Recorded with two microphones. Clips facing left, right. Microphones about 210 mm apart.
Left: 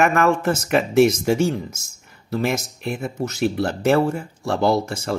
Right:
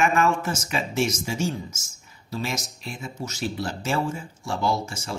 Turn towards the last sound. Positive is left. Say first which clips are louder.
# left 7 dB
turn(degrees=65)  # may be behind; listen again after turning